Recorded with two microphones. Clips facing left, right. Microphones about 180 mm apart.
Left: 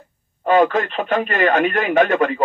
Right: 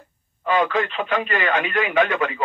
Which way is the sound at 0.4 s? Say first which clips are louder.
Left 5 dB; 45° left (ahead or behind).